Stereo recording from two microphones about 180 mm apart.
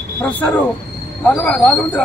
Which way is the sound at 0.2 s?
5° left (ahead or behind).